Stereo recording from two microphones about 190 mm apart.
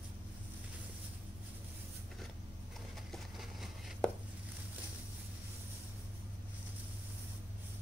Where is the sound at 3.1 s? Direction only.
Centre (ahead or behind).